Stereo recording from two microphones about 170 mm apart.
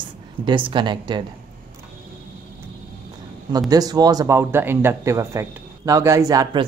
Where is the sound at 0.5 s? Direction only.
30° right (ahead or behind).